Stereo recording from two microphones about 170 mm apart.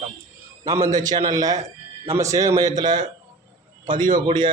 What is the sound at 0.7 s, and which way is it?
A man's voice, 20° right (ahead or behind).